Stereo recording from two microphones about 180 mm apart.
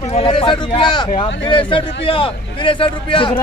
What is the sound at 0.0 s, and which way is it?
A man's voice, 35° left (ahead or behind).